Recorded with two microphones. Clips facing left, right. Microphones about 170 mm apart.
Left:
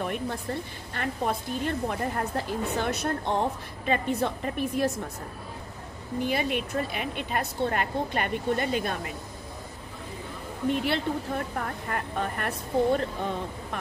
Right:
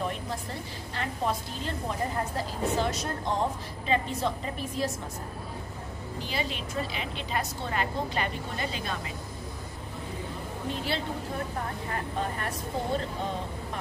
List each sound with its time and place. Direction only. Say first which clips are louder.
0.0 s a sound: left 2 dB; 60° left (ahead or behind)
0.9 s a woman's voice: left 2 dB; 55° left (ahead or behind)
6.1 s a woman's voice: left 7 dB; 55° left (ahead or behind)
10.7 s a woman's voice: left 6 dB; 60° left (ahead or behind)